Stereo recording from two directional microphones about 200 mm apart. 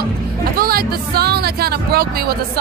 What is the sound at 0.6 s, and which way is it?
A woman's voice, 50° right (ahead or behind).